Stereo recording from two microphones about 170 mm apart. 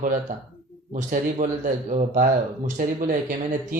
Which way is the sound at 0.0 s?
50° right (ahead or behind).